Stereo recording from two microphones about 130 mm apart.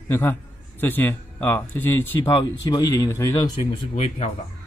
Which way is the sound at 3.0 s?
20° left (ahead or behind).